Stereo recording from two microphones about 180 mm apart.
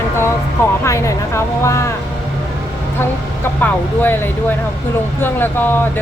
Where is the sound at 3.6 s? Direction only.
10° left (ahead or behind).